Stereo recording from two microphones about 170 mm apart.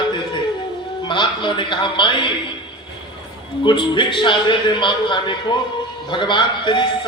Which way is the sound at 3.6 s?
25° left (ahead or behind).